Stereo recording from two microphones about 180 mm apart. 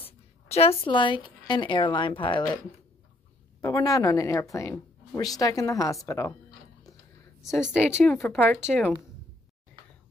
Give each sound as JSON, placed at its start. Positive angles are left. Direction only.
{"t": 0.5, "sound": "a woman's voice", "side_deg": 35}
{"t": 3.6, "sound": "a woman's voice", "side_deg": 20}
{"t": 7.4, "sound": "a woman's voice", "side_deg": -5}
{"t": 8.0, "sound": "speech", "side_deg": 10}